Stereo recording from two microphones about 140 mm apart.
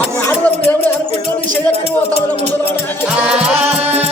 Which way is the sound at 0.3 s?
15° left (ahead or behind).